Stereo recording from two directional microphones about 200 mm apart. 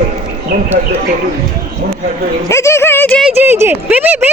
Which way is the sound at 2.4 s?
15° left (ahead or behind).